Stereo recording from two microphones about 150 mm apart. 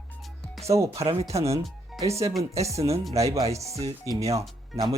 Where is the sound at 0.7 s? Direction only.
20° right (ahead or behind).